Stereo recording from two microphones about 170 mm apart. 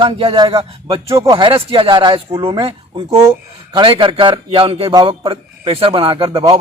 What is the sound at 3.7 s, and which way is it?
A man's voice, 30° right (ahead or behind).